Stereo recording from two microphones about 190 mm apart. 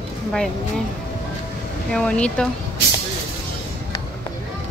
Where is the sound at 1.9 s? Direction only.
5° left (ahead or behind).